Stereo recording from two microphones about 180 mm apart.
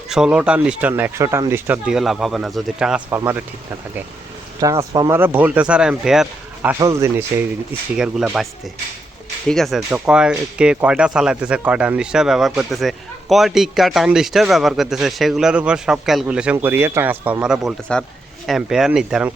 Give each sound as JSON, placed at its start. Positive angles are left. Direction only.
{"t": 0.1, "sound": "speech", "side_deg": -5}
{"t": 4.6, "sound": "speech", "side_deg": -20}
{"t": 6.7, "sound": "speech", "side_deg": -15}
{"t": 7.9, "sound": "speech", "side_deg": -5}